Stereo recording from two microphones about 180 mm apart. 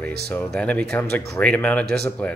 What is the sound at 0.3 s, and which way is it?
Speech, 5° left (ahead or behind).